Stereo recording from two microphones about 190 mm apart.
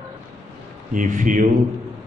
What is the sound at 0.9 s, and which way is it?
Speech, 45° right (ahead or behind).